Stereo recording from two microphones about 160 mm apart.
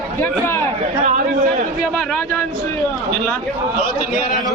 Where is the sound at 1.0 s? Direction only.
50° right (ahead or behind).